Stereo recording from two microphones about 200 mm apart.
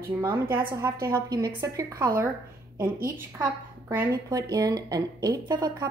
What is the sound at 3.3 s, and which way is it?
A woman's voice, 10° right (ahead or behind).